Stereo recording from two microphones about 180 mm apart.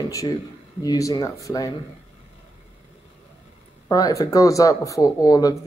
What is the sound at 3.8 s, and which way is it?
Speech, 20° left (ahead or behind).